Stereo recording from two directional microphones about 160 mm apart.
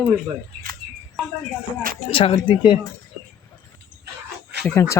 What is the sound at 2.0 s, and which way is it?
Speech, 35° left (ahead or behind).